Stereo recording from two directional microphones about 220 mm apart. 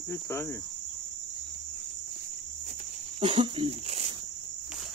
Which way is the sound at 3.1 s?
25° right (ahead or behind).